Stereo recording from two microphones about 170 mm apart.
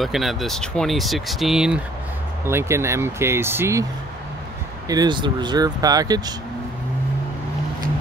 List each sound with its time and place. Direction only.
0.0 s speech: centre (ahead or behind)
2.4 s speech: 15° right (ahead or behind)
4.8 s speech: 25° right (ahead or behind)